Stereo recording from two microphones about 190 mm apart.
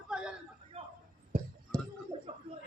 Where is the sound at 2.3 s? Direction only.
30° right (ahead or behind).